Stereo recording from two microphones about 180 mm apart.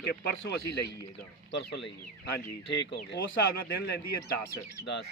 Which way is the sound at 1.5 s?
80° left.